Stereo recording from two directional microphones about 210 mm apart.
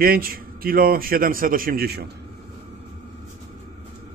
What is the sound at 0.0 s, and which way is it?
A man's voice, 45° right (ahead or behind).